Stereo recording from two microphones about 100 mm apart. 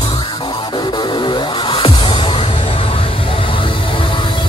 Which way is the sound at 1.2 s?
55° left (ahead or behind).